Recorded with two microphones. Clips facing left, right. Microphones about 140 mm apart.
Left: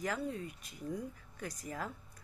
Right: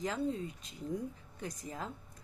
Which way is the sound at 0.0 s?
25° right (ahead or behind).